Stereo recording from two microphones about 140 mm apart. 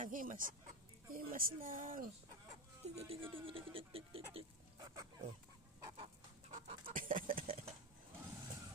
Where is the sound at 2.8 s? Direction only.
45° right (ahead or behind).